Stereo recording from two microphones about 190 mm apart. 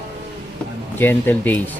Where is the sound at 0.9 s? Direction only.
10° left (ahead or behind).